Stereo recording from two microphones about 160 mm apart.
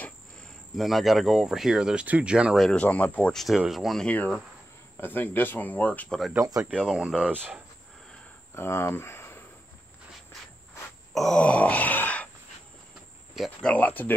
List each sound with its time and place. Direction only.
0.0 s cricket: centre (ahead or behind)
5.0 s speech: 10° left (ahead or behind)
6.3 s speech: 20° right (ahead or behind)
6.7 s cricket: 5° right (ahead or behind)
8.5 s speech: 15° left (ahead or behind)
11.1 s groan: 5° left (ahead or behind)
13.3 s speech: centre (ahead or behind)